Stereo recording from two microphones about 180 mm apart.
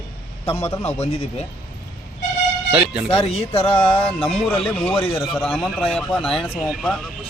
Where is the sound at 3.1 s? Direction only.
30° left (ahead or behind).